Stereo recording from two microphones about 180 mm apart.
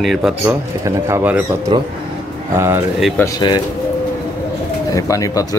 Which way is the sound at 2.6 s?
15° right (ahead or behind).